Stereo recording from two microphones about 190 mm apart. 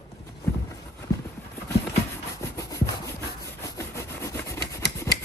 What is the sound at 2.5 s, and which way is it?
Rub, 15° left (ahead or behind).